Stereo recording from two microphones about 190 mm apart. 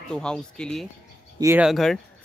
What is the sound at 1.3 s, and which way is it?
Speech, 15° right (ahead or behind).